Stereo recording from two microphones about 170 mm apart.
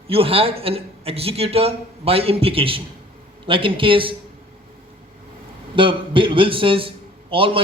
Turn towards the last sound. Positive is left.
turn(degrees=-30)  # may be behind; listen again after turning